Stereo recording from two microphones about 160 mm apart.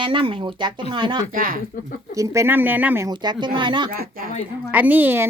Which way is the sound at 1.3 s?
60° right (ahead or behind).